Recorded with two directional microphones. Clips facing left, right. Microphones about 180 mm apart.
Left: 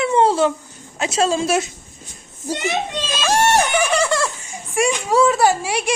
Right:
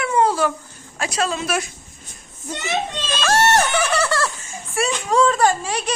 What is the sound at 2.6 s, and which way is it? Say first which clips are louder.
A woman's voice: even; 10° left (ahead or behind).